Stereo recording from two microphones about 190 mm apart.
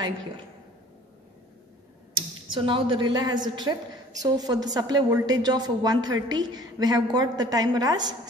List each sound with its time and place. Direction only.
2.5 s a woman's voice: 25° right (ahead or behind)